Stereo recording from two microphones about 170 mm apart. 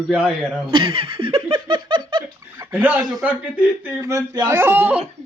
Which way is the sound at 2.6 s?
10° right (ahead or behind).